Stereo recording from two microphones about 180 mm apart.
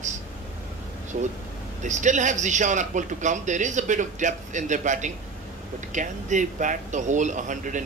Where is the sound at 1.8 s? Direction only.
45° right (ahead or behind).